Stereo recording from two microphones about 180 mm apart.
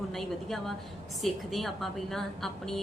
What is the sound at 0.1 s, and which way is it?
A woman's voice, centre (ahead or behind).